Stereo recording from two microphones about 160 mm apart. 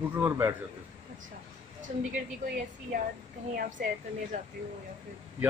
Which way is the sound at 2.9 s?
65° right (ahead or behind).